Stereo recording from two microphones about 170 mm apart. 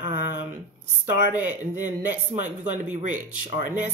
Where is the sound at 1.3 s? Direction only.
10° right (ahead or behind).